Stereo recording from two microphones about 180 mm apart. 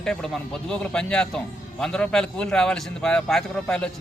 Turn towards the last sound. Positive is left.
turn(degrees=5)  # may be behind; listen again after turning